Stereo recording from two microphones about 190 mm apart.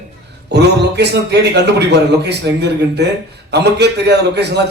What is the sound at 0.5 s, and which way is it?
A man's voice, 60° right (ahead or behind).